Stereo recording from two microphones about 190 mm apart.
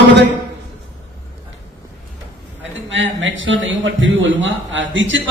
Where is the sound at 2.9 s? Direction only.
75° right (ahead or behind).